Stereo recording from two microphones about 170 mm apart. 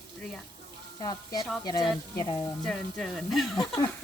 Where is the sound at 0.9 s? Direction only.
25° left (ahead or behind).